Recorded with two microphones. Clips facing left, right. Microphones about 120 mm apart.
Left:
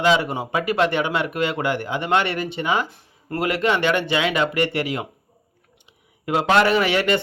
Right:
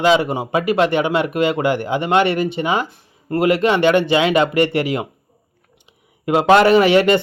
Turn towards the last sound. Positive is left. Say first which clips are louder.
# right 7 dB
turn(degrees=-20)  # may be behind; listen again after turning